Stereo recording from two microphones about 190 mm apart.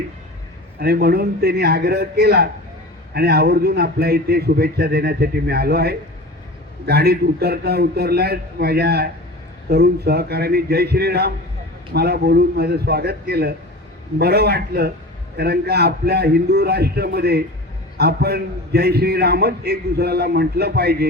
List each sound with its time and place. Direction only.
0.8 s a man's voice: 55° right (ahead or behind)